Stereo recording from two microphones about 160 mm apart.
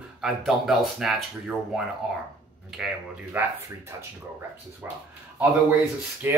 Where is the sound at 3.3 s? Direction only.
10° right (ahead or behind).